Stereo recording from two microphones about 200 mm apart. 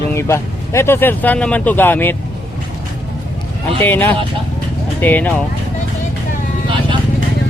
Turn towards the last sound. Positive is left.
turn(degrees=-25)  # may be behind; listen again after turning